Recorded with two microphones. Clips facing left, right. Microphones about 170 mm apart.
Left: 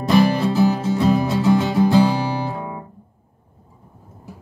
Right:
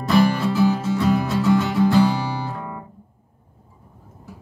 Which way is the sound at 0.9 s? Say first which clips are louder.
Left 2 dB; 20° left (ahead or behind).